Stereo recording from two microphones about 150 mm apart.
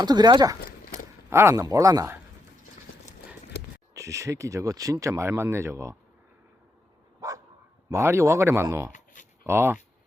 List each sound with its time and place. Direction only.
0.0 s speech: 25° right (ahead or behind)
1.3 s speech: 15° right (ahead or behind)
3.5 s a sound: 90° left
3.9 s speech: 20° right (ahead or behind)
7.2 s dog: 20° right (ahead or behind)
7.9 s speech: 20° right (ahead or behind)